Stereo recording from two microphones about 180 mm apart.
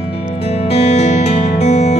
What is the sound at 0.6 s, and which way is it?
Music, 35° left (ahead or behind).